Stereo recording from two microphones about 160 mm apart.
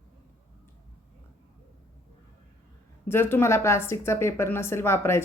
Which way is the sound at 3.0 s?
15° left (ahead or behind).